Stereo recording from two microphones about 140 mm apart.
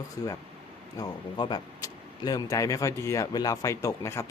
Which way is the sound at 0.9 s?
30° left (ahead or behind).